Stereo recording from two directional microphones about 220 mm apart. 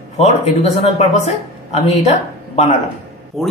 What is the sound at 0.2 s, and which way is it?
A man's voice, 30° left (ahead or behind).